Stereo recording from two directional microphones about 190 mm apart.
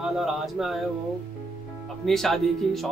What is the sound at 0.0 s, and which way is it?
Speech, centre (ahead or behind).